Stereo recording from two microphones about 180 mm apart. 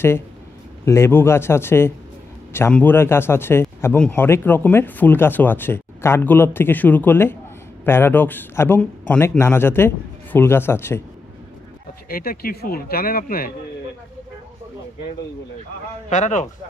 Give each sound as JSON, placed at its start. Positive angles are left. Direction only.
{"t": 0.8, "sound": "speech", "side_deg": 15}
{"t": 12.1, "sound": "speech", "side_deg": 55}
{"t": 16.1, "sound": "speech", "side_deg": 40}